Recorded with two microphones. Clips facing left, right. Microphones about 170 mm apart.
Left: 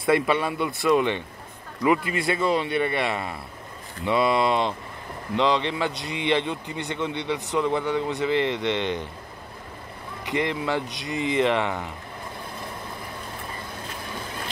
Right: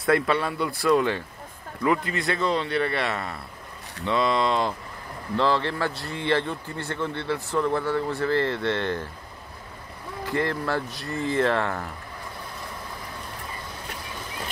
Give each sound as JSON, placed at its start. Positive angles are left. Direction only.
{"t": 0.0, "sound": "a man's voice", "side_deg": 0}
{"t": 4.0, "sound": "a man's voice", "side_deg": 10}
{"t": 5.3, "sound": "a man's voice", "side_deg": 20}
{"t": 10.3, "sound": "a man's voice", "side_deg": 15}